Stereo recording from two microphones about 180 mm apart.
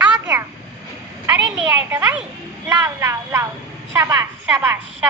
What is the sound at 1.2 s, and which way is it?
A woman's voice, 10° right (ahead or behind).